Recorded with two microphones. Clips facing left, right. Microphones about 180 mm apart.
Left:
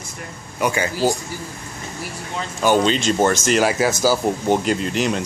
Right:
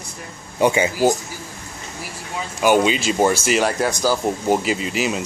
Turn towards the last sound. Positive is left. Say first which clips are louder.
# left 2 dB
turn(degrees=-5)  # may be behind; listen again after turning